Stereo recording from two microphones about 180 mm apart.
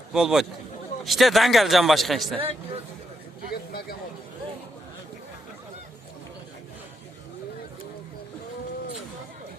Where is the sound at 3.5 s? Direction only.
55° left (ahead or behind).